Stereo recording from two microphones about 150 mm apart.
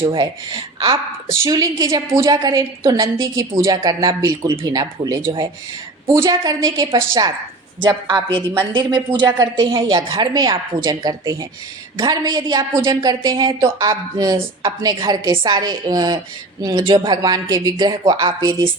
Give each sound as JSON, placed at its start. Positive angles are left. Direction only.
{"t": 0.0, "sound": "a woman's voice", "side_deg": -35}
{"t": 9.8, "sound": "a woman's voice", "side_deg": -25}